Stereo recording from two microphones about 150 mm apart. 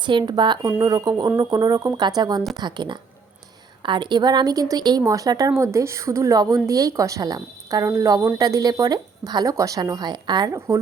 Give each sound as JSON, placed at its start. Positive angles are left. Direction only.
{"t": 0.0, "sound": "a woman's voice", "side_deg": -30}